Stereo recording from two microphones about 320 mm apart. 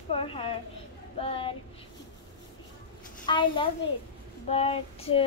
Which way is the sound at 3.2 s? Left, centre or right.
Centre.